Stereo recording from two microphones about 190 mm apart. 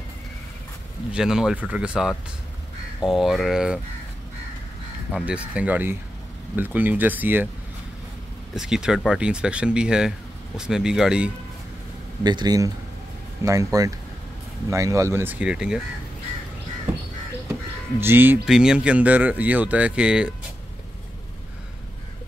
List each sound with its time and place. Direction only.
1.1 s speech: 5° right (ahead or behind)
5.1 s speech: 5° right (ahead or behind)
8.5 s speech: 5° right (ahead or behind)
12.2 s speech: 20° right (ahead or behind); by 15.8 s 5° right (ahead or behind)
18.0 s speech: 10° right (ahead or behind)